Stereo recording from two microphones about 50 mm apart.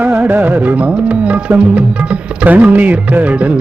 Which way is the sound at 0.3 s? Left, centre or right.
Right.